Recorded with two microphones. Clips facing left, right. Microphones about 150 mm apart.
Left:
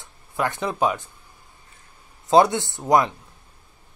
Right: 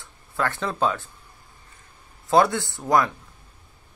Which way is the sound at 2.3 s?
20° left (ahead or behind).